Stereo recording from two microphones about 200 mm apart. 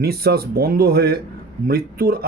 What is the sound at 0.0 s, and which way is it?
Speech, 50° right (ahead or behind).